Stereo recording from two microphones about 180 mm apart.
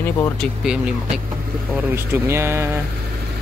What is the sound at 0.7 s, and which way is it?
Speech, 5° right (ahead or behind).